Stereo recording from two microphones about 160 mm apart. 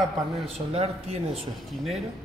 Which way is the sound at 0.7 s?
40° right (ahead or behind).